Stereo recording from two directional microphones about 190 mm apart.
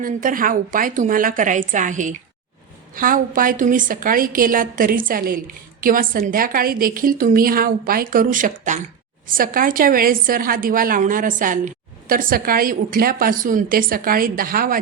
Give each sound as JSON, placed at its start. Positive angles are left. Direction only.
{"t": 0.0, "sound": "a woman's voice", "side_deg": -45}